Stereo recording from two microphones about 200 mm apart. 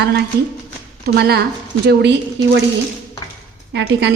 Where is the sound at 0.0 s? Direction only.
55° right (ahead or behind).